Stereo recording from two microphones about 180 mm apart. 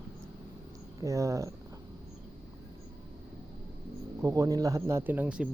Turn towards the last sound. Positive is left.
turn(degrees=-5)  # may be behind; listen again after turning